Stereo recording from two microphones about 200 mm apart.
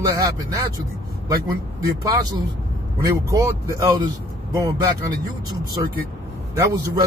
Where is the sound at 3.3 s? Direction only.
15° right (ahead or behind).